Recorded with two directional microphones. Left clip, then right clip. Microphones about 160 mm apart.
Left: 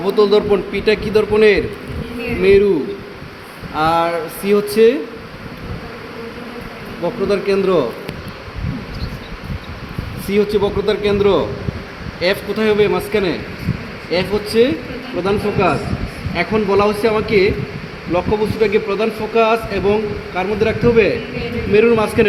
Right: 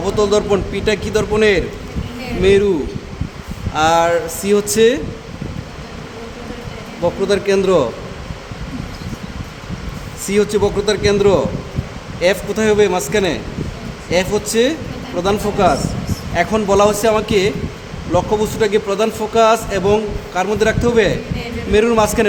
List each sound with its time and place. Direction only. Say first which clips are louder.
0.0 s a man's voice: left 2 dB; 25° right (ahead or behind)
3.8 s a man's voice: right 2 dB; 30° right (ahead or behind)
7.0 s a man's voice: right 2 dB; 35° right (ahead or behind)
10.2 s a man's voice: right 1 dB; 30° right (ahead or behind)
18.6 s a man's voice: even; 40° right (ahead or behind)